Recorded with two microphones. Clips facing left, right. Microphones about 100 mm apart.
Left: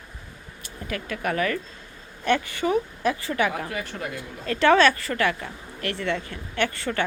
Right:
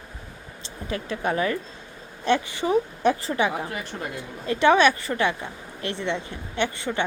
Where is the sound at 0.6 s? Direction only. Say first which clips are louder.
Right 2 dB; 25° right (ahead or behind).